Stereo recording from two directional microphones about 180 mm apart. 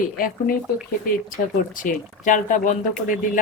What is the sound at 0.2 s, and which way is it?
Speech, 50° left (ahead or behind).